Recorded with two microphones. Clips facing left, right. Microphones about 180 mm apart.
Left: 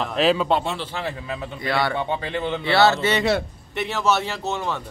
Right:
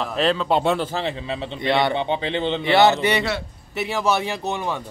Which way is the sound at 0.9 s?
25° right (ahead or behind).